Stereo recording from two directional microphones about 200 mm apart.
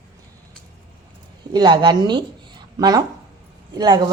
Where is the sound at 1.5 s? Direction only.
25° right (ahead or behind).